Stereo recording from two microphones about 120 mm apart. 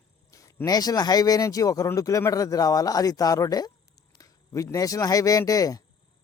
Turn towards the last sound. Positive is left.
turn(degrees=30)  # may be behind; listen again after turning